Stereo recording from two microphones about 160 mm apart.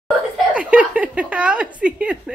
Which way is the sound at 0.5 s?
10° right (ahead or behind).